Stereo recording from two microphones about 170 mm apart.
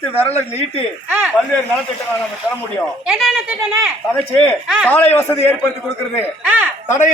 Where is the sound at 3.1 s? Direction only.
Centre (ahead or behind).